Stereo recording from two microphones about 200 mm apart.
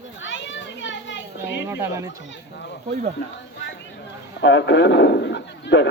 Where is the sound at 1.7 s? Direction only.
10° right (ahead or behind).